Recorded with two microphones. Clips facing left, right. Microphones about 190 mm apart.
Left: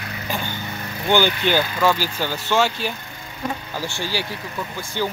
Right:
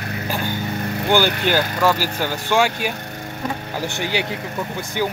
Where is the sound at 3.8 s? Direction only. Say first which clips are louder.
Right 6 dB; 20° right (ahead or behind).